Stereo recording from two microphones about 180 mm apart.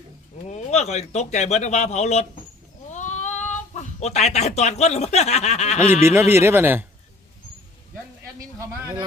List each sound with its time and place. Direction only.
0.5 s a man's voice: 40° left (ahead or behind)
5.9 s speech: 15° right (ahead or behind)
8.4 s speech: 15° right (ahead or behind)